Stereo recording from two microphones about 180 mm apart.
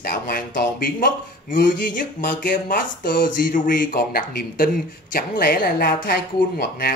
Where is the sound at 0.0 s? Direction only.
55° left (ahead or behind).